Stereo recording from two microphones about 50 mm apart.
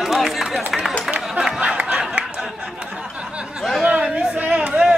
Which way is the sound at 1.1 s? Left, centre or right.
Centre.